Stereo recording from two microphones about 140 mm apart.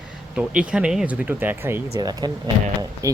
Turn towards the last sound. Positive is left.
turn(degrees=-20)  # may be behind; listen again after turning